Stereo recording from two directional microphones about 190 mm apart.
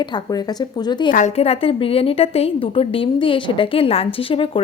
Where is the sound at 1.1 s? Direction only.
35° left (ahead or behind).